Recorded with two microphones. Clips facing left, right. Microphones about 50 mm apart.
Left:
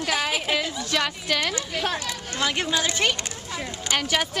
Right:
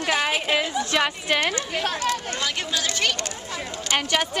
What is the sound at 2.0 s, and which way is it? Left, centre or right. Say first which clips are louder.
Speech: right 7 dB; right.